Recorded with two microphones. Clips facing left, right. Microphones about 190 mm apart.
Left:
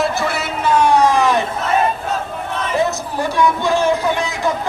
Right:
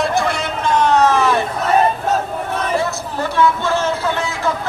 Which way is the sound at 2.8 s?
15° left (ahead or behind).